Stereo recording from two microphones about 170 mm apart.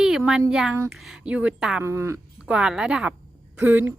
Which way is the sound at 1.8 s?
15° right (ahead or behind).